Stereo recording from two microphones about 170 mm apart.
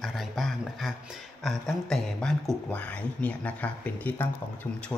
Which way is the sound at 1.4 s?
Centre (ahead or behind).